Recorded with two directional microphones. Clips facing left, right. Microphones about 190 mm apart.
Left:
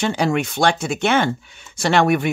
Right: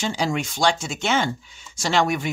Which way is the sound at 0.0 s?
60° left (ahead or behind).